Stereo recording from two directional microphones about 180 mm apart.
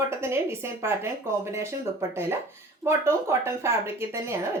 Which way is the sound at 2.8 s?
15° right (ahead or behind).